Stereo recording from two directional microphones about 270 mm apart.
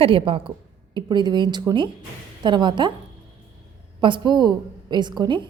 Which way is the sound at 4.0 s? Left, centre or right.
Centre.